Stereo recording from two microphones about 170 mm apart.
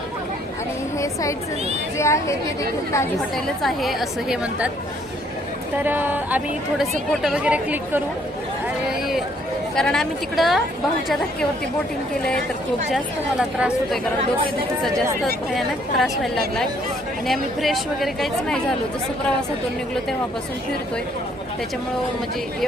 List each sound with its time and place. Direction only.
0.9 s a sound: 20° left (ahead or behind)
2.0 s a woman's voice: 15° left (ahead or behind)
3.3 s a woman's voice: centre (ahead or behind)
5.7 s a woman's voice: 10° right (ahead or behind)
9.0 s a sound: centre (ahead or behind)
9.7 s a woman's voice: 5° left (ahead or behind)
13.4 s a woman's voice: 5° right (ahead or behind)
15.5 s a woman's voice: centre (ahead or behind)